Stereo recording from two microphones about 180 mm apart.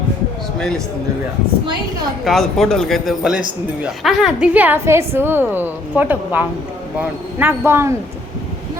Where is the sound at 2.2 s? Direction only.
Centre (ahead or behind).